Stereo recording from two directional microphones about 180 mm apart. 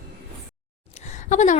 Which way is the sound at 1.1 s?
40° left (ahead or behind).